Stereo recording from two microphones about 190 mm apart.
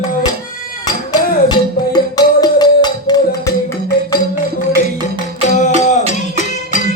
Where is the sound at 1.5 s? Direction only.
20° left (ahead or behind).